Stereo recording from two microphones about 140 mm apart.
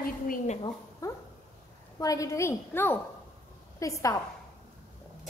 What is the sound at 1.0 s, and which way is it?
Dog, 25° left (ahead or behind).